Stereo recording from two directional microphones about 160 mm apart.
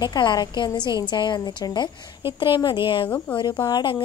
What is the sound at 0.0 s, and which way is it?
A woman's voice, 25° left (ahead or behind).